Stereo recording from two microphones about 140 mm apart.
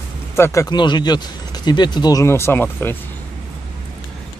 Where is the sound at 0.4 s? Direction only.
20° left (ahead or behind).